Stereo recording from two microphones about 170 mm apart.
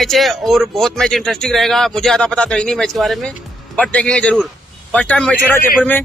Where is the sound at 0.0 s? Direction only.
Centre (ahead or behind).